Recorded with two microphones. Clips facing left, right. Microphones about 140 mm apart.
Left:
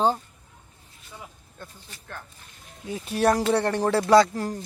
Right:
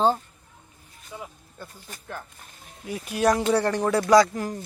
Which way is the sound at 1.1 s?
10° right (ahead or behind).